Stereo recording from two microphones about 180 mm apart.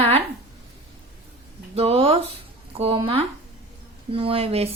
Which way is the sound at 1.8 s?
35° right (ahead or behind).